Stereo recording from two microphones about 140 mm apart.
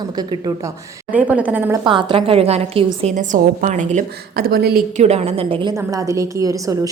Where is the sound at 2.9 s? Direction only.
60° right (ahead or behind); by 4.8 s 90° right.